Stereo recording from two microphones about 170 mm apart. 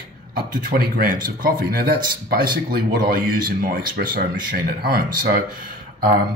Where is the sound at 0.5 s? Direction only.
60° right (ahead or behind).